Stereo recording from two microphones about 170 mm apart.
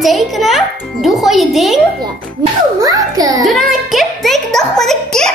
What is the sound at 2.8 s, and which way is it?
Speech, 20° right (ahead or behind).